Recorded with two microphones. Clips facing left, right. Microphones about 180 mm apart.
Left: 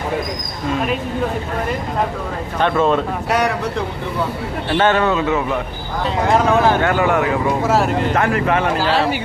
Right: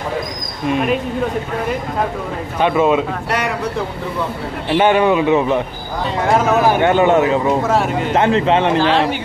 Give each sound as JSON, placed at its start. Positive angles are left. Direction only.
{"t": 2.6, "sound": "speech", "side_deg": -10}
{"t": 4.7, "sound": "speech", "side_deg": -15}
{"t": 6.8, "sound": "speech", "side_deg": -20}
{"t": 7.6, "sound": "speech", "side_deg": 0}
{"t": 8.1, "sound": "speech", "side_deg": -25}